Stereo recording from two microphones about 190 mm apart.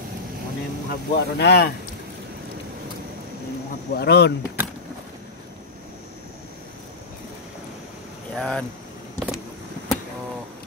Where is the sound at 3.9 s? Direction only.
60° left (ahead or behind).